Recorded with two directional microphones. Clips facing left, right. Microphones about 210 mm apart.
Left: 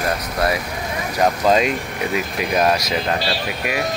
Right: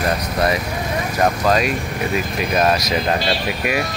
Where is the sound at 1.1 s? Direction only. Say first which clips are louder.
Left 1 dB; 20° left (ahead or behind).